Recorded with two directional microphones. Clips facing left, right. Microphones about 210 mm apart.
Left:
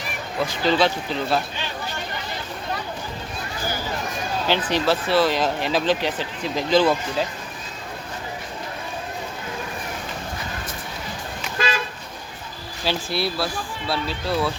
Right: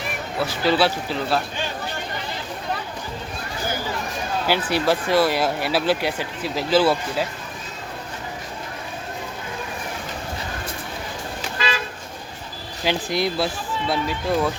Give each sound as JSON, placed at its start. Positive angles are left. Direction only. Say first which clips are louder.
{"t": 0.3, "sound": "speech", "louder": "even", "side_deg": -5}
{"t": 4.4, "sound": "speech", "louder": "even", "side_deg": -10}
{"t": 11.5, "sound": "toot", "louder": "left 2 dB", "side_deg": 50}
{"t": 12.8, "sound": "speech", "louder": "right 2 dB", "side_deg": -15}